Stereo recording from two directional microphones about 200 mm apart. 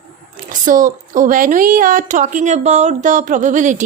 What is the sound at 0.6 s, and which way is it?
A woman's voice, 40° right (ahead or behind).